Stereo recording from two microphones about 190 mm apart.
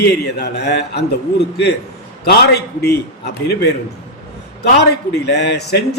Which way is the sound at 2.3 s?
60° left (ahead or behind).